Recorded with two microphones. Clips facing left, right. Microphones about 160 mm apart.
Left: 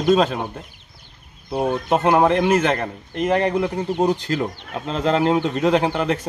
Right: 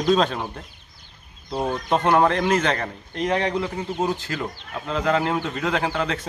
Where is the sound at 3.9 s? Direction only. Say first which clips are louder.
Left 6 dB; 20° left (ahead or behind).